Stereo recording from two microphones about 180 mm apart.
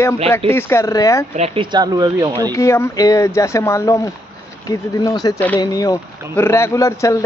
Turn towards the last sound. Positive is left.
turn(degrees=15)  # may be behind; listen again after turning